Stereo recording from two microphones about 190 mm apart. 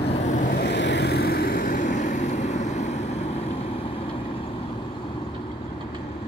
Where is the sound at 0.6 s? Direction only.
65° left (ahead or behind); by 2.9 s 35° left (ahead or behind).